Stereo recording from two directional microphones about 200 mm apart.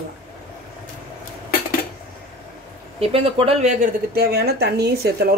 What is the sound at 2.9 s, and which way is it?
Speech, 30° right (ahead or behind).